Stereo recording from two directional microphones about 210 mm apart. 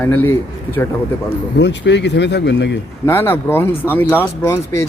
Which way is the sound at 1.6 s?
55° left (ahead or behind).